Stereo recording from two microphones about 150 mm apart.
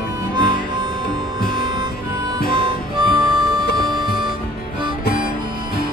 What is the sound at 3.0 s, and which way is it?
Music, 30° right (ahead or behind).